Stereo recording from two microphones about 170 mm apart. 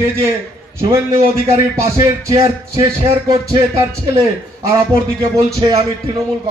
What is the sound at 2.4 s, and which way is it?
Music, 20° right (ahead or behind).